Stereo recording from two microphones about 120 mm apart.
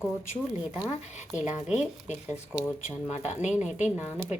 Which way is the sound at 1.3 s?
10° right (ahead or behind).